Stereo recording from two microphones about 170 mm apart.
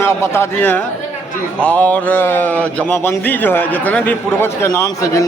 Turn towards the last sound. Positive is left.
turn(degrees=10)  # may be behind; listen again after turning